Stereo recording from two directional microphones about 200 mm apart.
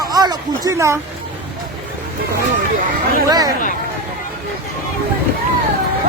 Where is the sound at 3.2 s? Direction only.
20° right (ahead or behind).